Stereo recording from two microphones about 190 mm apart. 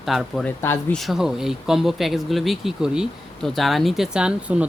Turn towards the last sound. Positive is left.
turn(degrees=-5)  # may be behind; listen again after turning